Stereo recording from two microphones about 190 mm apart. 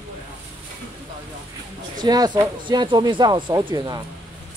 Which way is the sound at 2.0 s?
20° right (ahead or behind).